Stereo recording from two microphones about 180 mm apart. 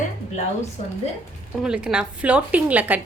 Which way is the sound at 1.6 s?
5° right (ahead or behind).